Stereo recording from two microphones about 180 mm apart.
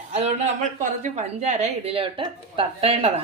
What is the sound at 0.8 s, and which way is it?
A woman's voice, 40° right (ahead or behind).